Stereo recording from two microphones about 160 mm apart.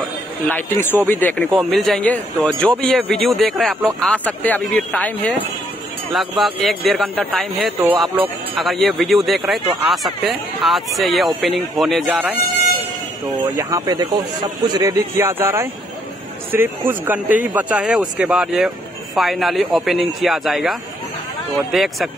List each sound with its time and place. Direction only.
0.5 s speech: 10° left (ahead or behind)
13.6 s speech: 20° right (ahead or behind); by 20.7 s centre (ahead or behind)
21.7 s speech: centre (ahead or behind)